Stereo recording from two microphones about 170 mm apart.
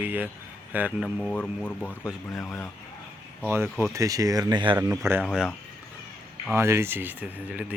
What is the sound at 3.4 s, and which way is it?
Speech, 15° right (ahead or behind).